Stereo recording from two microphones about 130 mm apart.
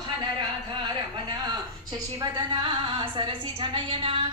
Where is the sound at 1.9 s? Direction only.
30° right (ahead or behind).